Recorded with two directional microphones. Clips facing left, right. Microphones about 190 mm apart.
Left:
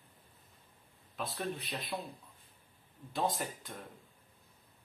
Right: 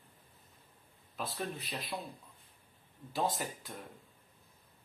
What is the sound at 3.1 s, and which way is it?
Speech, centre (ahead or behind).